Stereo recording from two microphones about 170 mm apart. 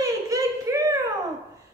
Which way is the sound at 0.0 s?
20° right (ahead or behind).